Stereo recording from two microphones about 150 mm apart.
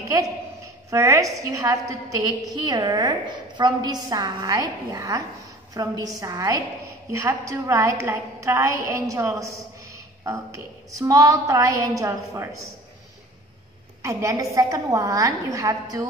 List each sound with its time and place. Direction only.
0.8 s a woman's voice: 20° right (ahead or behind)
14.0 s a woman's voice: 20° right (ahead or behind)